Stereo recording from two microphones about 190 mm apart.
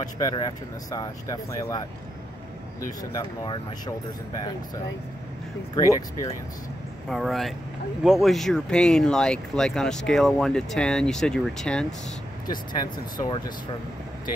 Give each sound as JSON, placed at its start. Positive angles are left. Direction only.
{"t": 0.0, "sound": "speech", "side_deg": 20}
{"t": 3.0, "sound": "speech", "side_deg": 20}
{"t": 5.8, "sound": "speech", "side_deg": 20}
{"t": 7.1, "sound": "speech", "side_deg": 0}
{"t": 12.4, "sound": "speech", "side_deg": 20}